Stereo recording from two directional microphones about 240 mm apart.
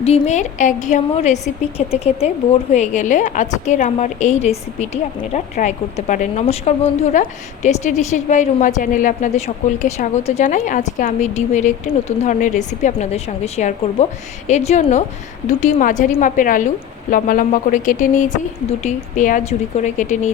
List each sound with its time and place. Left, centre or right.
0.0 s a woman's voice: left